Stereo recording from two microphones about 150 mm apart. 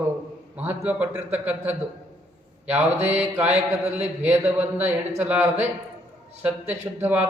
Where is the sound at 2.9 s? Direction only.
45° right (ahead or behind).